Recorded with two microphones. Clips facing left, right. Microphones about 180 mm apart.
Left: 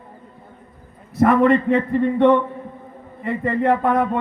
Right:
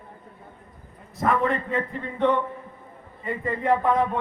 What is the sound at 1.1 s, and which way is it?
A man's voice, 75° left (ahead or behind).